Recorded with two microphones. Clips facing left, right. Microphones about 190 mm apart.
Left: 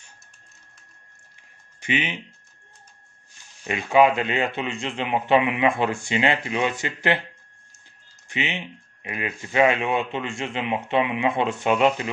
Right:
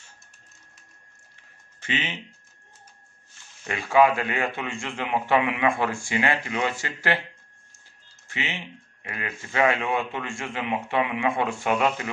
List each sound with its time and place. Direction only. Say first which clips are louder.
1.8 s speech: left 4 dB; 15° left (ahead or behind)
3.6 s speech: left 2 dB; 20° left (ahead or behind)
8.3 s speech: left 4 dB; 20° left (ahead or behind)